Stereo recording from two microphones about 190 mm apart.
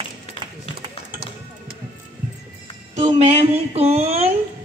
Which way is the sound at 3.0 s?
35° right (ahead or behind).